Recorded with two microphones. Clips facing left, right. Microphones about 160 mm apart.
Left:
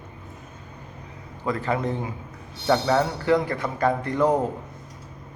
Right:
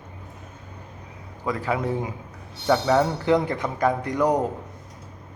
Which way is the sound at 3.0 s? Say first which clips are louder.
Right 1 dB; 20° right (ahead or behind).